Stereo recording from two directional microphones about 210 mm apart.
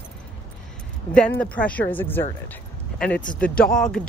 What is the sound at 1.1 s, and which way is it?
Speech, 5° left (ahead or behind).